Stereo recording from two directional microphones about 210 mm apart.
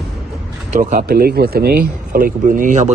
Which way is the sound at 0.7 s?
35° right (ahead or behind).